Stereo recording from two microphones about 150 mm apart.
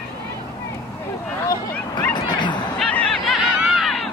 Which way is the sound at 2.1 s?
30° left (ahead or behind).